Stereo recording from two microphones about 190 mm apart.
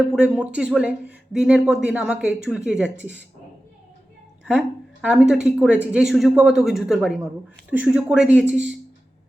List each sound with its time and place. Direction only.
0.1 s speech: 5° right (ahead or behind)
4.4 s speech: 5° right (ahead or behind)